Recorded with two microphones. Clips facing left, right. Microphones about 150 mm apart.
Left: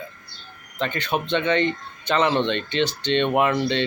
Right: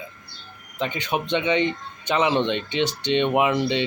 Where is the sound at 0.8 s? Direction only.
15° right (ahead or behind).